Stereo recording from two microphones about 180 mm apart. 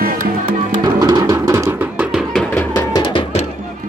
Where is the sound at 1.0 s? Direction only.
20° right (ahead or behind).